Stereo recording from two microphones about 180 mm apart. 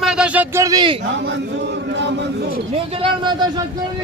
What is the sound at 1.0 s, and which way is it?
A man's voice, 80° right.